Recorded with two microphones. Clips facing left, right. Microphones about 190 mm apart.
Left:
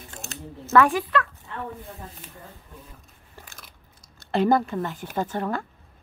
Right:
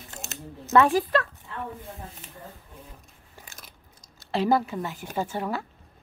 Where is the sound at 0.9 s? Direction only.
35° right (ahead or behind).